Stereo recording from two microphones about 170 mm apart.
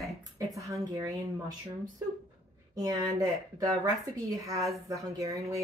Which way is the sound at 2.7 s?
20° right (ahead or behind).